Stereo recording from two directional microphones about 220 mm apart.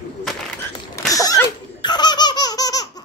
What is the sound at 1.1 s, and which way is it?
Laughter, 15° left (ahead or behind).